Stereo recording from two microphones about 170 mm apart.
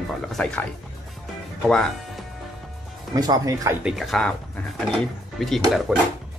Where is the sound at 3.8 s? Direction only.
Centre (ahead or behind).